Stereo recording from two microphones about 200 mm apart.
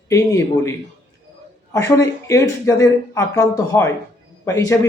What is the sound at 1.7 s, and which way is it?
Speech, 15° left (ahead or behind).